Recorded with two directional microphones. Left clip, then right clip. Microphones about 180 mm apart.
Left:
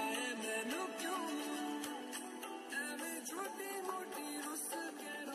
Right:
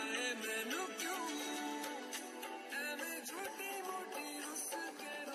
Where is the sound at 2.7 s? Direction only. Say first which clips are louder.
Even; 35° left (ahead or behind).